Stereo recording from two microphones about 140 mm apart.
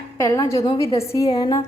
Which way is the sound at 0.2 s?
20° left (ahead or behind).